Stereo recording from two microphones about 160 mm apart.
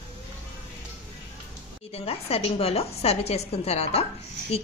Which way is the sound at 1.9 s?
40° left (ahead or behind).